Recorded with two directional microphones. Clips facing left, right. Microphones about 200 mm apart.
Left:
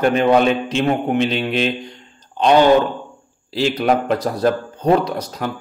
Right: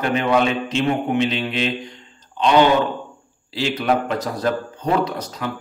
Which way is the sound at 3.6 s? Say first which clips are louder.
Left 3 dB; 40° left (ahead or behind).